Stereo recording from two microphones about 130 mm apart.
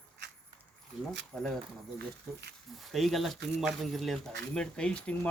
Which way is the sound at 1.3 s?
5° left (ahead or behind).